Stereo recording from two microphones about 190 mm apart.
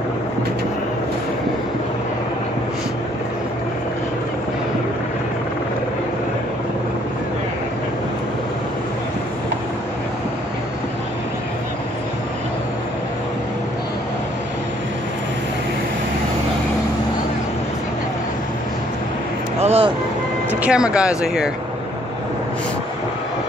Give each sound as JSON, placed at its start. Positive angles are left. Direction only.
{"t": 19.6, "sound": "vehicle", "side_deg": -35}
{"t": 20.6, "sound": "speech", "side_deg": -5}